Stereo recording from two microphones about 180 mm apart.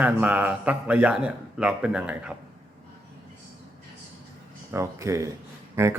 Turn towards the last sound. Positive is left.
turn(degrees=-15)  # may be behind; listen again after turning